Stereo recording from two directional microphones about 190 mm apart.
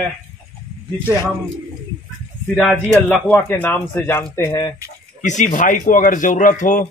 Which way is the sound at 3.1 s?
10° left (ahead or behind).